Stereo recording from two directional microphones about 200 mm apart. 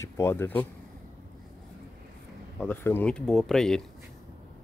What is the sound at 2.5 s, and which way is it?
Speech, 10° left (ahead or behind).